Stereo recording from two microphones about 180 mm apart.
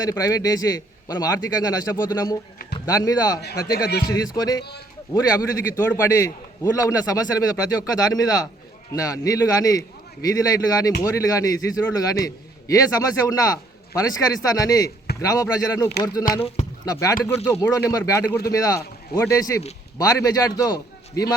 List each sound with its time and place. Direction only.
0.0 s a man's voice: 20° left (ahead or behind)
3.8 s speech: 60° left (ahead or behind)
4.4 s a man's voice: 20° left (ahead or behind)
5.7 s a man's voice: 15° left (ahead or behind)